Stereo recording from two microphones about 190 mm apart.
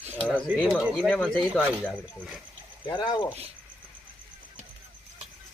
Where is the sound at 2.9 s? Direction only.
25° left (ahead or behind).